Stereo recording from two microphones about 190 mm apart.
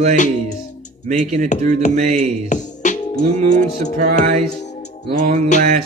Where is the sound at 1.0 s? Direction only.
45° right (ahead or behind).